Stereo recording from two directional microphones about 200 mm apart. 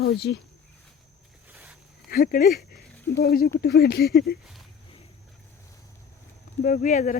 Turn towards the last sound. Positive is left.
turn(degrees=35)  # may be behind; listen again after turning